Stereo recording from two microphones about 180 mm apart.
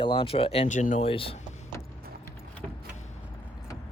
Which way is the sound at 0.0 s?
30° left (ahead or behind).